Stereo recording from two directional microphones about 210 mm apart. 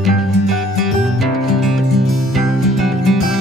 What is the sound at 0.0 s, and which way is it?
Music, centre (ahead or behind).